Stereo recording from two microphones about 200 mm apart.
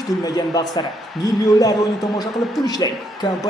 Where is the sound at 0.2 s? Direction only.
20° left (ahead or behind).